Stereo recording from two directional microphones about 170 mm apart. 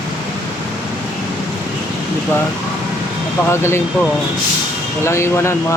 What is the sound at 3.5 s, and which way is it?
Speech, 15° left (ahead or behind).